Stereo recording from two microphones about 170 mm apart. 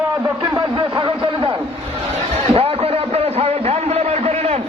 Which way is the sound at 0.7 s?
30° right (ahead or behind).